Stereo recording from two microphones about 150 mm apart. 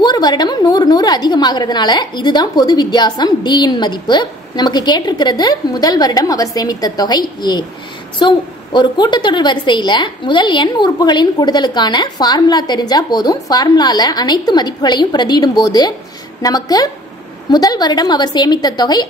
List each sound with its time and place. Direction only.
0.0 s a woman's voice: 30° left (ahead or behind)